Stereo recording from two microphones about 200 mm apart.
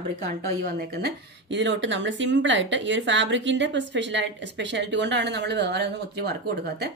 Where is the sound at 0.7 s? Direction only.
55° right (ahead or behind).